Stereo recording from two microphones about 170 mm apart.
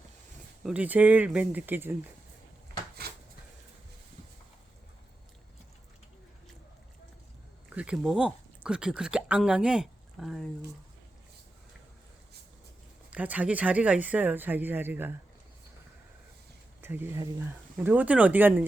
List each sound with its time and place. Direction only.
0.6 s speech: 10° right (ahead or behind)
3.0 s dishes: 65° right (ahead or behind)
7.7 s speech: 5° right (ahead or behind)
13.1 s speech: 10° right (ahead or behind)
16.8 s speech: 15° right (ahead or behind)